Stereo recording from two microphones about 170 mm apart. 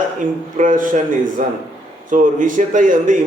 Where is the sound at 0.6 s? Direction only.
50° right (ahead or behind).